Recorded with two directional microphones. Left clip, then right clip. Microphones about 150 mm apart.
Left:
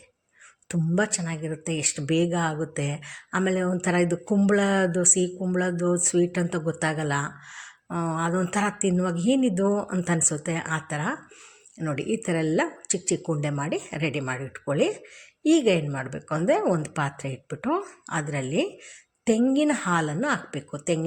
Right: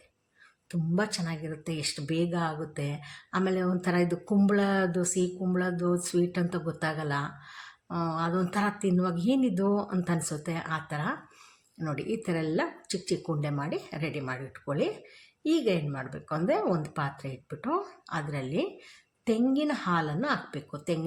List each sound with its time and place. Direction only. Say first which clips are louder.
0.9 s speech: left 5 dB; 10° left (ahead or behind)